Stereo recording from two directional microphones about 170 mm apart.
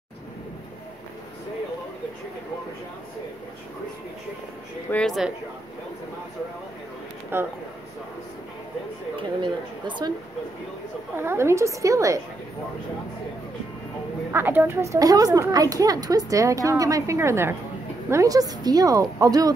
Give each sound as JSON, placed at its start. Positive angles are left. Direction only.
{"t": 4.9, "sound": "speech", "side_deg": 0}
{"t": 7.3, "sound": "a woman's voice", "side_deg": -15}
{"t": 9.1, "sound": "a woman's voice", "side_deg": -30}
{"t": 11.1, "sound": "a woman's voice", "side_deg": -15}
{"t": 14.3, "sound": "a woman's voice", "side_deg": -10}